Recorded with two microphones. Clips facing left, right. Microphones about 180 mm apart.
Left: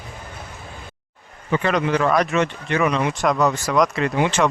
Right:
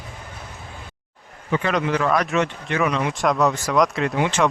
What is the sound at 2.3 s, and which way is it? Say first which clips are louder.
Speech: left 1 dB; centre (ahead or behind).